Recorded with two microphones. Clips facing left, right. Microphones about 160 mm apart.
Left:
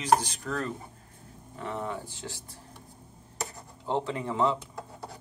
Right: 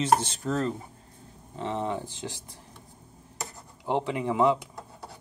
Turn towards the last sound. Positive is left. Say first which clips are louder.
# right 4 dB
turn(degrees=-15)  # may be behind; listen again after turning